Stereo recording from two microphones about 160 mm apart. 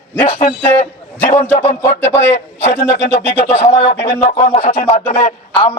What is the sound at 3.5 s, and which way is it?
A man's voice, 40° left (ahead or behind).